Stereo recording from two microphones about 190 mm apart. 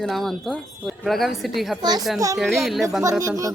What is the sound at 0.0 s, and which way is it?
A woman's voice, centre (ahead or behind).